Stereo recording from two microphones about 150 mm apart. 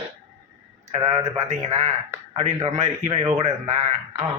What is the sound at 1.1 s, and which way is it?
Speech, 20° right (ahead or behind).